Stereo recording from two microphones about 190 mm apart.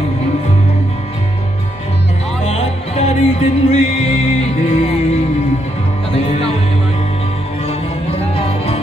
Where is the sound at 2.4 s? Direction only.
30° left (ahead or behind).